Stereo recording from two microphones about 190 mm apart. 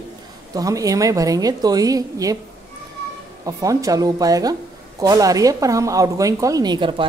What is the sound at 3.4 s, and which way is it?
Speech, 20° right (ahead or behind).